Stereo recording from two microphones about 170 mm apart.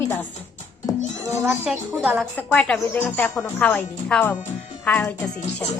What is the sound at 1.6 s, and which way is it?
Speech, 10° right (ahead or behind).